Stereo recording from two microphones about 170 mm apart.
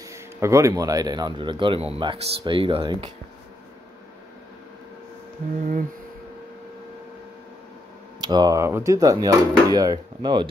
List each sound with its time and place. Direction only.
0.0 s speech: 15° right (ahead or behind)
8.2 s speech: 25° right (ahead or behind)